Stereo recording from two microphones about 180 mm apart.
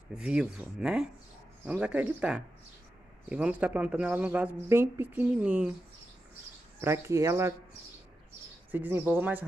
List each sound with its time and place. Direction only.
0.1 s speech: 5° right (ahead or behind)
6.8 s speech: 15° right (ahead or behind)
8.7 s speech: 10° right (ahead or behind)